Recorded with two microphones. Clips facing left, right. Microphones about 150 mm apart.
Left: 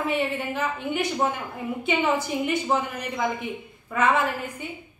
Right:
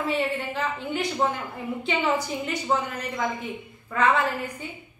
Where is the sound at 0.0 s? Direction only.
20° left (ahead or behind).